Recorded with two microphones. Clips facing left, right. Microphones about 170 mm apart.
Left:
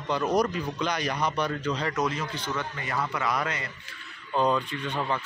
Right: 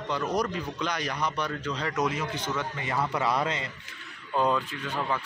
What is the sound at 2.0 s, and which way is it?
A man's voice, 15° right (ahead or behind).